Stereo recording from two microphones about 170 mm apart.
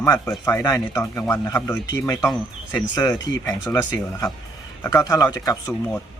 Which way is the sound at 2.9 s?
25° left (ahead or behind).